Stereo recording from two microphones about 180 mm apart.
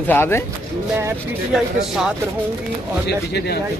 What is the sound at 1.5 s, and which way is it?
Speech, centre (ahead or behind).